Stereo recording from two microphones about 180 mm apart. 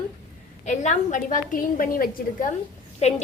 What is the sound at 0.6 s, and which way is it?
A woman's voice, 40° left (ahead or behind).